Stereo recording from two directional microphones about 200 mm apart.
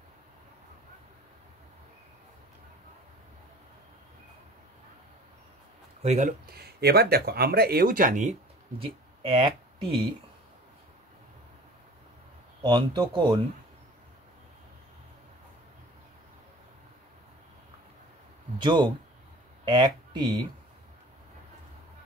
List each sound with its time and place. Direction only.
6.0 s speech: 35° right (ahead or behind)
6.5 s speech: 50° right (ahead or behind); by 10.0 s 25° right (ahead or behind)
12.6 s speech: 20° right (ahead or behind)
18.6 s speech: 20° right (ahead or behind)